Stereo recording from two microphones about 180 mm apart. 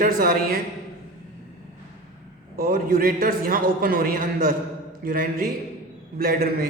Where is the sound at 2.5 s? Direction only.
55° right (ahead or behind).